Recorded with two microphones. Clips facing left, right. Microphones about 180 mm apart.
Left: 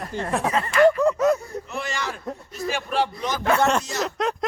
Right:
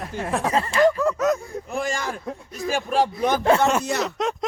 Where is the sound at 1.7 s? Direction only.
45° right (ahead or behind).